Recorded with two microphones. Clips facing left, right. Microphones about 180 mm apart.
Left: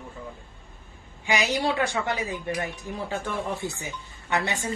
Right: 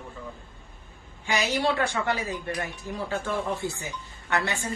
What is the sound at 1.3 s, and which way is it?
A woman's voice, 15° left (ahead or behind).